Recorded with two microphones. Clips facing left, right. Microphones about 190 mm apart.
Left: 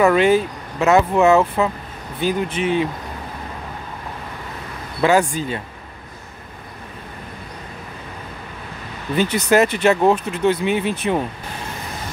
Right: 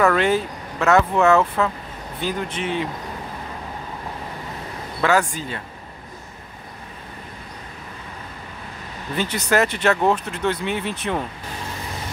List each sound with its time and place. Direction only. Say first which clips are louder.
0.0 s speech: left 4 dB; 10° left (ahead or behind)
5.0 s speech: left 4 dB; 15° left (ahead or behind)
9.1 s speech: left 5 dB; 15° left (ahead or behind)